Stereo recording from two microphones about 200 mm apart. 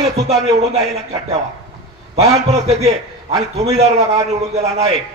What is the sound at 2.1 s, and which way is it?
A man's voice, 30° right (ahead or behind).